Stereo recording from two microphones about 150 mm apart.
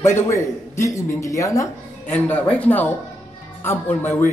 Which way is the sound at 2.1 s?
10° left (ahead or behind).